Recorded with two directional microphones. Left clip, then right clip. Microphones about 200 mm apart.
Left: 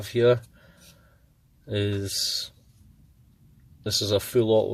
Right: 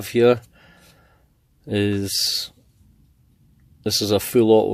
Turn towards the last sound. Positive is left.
turn(degrees=-40)  # may be behind; listen again after turning